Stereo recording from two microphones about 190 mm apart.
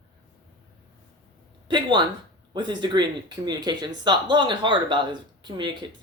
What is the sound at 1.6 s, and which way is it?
Speech, 25° right (ahead or behind).